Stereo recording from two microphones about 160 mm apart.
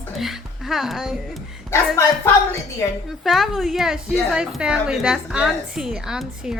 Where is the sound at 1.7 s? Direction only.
15° left (ahead or behind).